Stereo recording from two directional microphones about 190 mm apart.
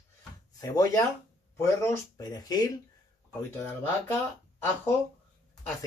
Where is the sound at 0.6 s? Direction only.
20° left (ahead or behind).